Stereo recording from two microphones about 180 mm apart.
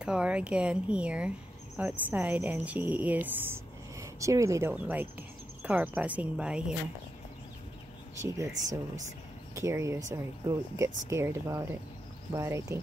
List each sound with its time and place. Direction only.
0.0 s speech: 5° right (ahead or behind)
8.2 s speech: 15° right (ahead or behind)